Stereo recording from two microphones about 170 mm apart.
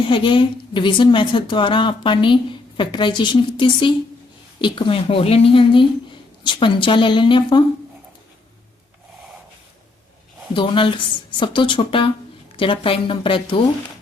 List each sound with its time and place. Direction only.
0.0 s a woman's voice: 30° left (ahead or behind)
10.5 s a woman's voice: 30° left (ahead or behind)